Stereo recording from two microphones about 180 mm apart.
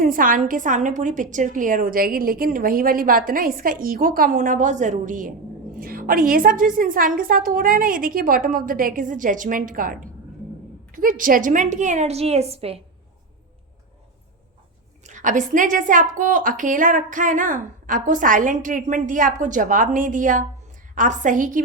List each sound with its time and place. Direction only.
0.0 s a woman's voice: 50° right (ahead or behind); by 12.8 s 35° right (ahead or behind)
15.0 s a woman's voice: 45° right (ahead or behind)